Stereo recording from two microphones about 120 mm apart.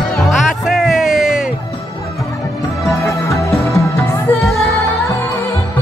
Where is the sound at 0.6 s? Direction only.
Centre (ahead or behind).